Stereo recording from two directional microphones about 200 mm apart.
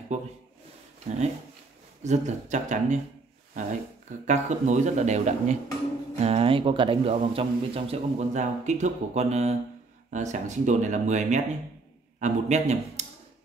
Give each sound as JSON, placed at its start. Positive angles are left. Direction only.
{"t": 0.1, "sound": "a man's voice", "side_deg": -35}
{"t": 4.3, "sound": "a man's voice", "side_deg": -35}